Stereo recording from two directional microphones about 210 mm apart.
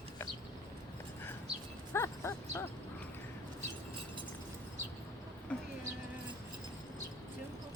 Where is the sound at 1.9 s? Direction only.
15° left (ahead or behind).